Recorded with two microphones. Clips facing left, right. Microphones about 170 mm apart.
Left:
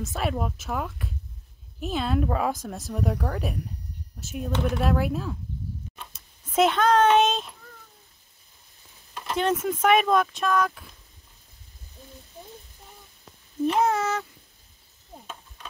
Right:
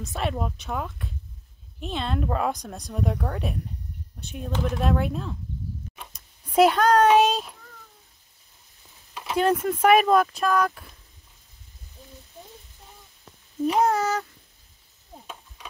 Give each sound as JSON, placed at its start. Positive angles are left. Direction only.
{"t": 0.0, "sound": "speech", "side_deg": 0}
{"t": 4.5, "sound": "speech", "side_deg": 65}
{"t": 4.8, "sound": "speech", "side_deg": 5}
{"t": 6.5, "sound": "speech", "side_deg": 0}
{"t": 9.1, "sound": "speech", "side_deg": -5}
{"t": 13.7, "sound": "speech", "side_deg": 5}